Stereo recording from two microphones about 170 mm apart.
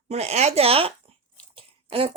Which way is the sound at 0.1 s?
40° right (ahead or behind).